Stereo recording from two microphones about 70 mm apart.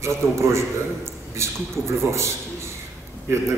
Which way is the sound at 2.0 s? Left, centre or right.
Right.